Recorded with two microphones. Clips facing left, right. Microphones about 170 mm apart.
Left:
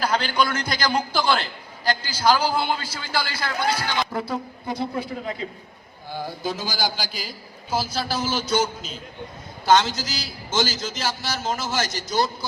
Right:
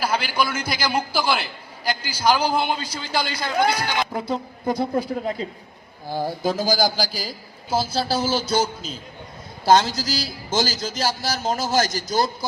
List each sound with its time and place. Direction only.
0.0 s a man's voice: 10° right (ahead or behind)
4.6 s a man's voice: 40° right (ahead or behind)